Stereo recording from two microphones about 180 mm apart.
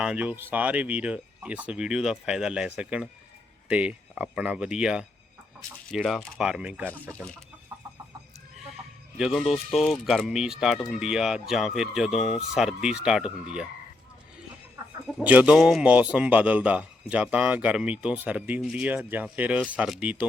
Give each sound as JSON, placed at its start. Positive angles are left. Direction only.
{"t": 0.0, "sound": "a man's voice", "side_deg": -5}
{"t": 7.1, "sound": "speech", "side_deg": 5}
{"t": 9.1, "sound": "speech", "side_deg": 0}
{"t": 15.2, "sound": "a man's voice", "side_deg": -10}